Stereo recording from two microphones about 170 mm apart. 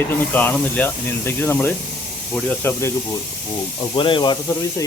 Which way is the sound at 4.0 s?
25° left (ahead or behind).